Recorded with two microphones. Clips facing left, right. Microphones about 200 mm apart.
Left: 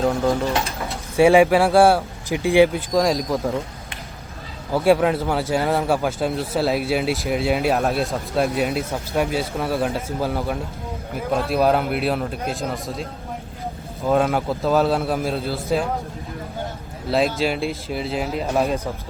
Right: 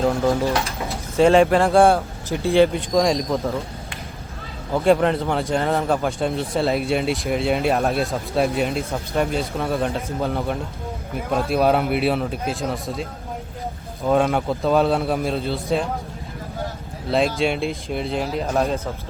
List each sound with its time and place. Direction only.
0.0 s a man's voice: centre (ahead or behind)
1.1 s a man's voice: 10° left (ahead or behind)
2.3 s speech: 15° left (ahead or behind)
2.9 s a man's voice: centre (ahead or behind)
4.7 s a man's voice: 5° left (ahead or behind)
17.1 s a man's voice: centre (ahead or behind)